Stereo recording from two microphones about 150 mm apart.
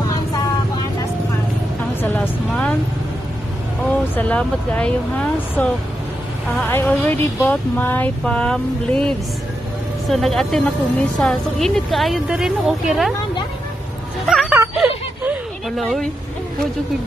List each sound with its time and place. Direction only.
2.0 s vehicle: 10° left (ahead or behind)
4.1 s a woman's voice: 10° left (ahead or behind)
14.3 s music: centre (ahead or behind)
14.8 s a sound: 5° right (ahead or behind)
15.8 s a woman's voice: 5° left (ahead or behind)